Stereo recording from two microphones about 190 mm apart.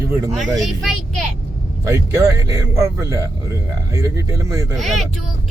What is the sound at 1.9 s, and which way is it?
Speech, 15° right (ahead or behind).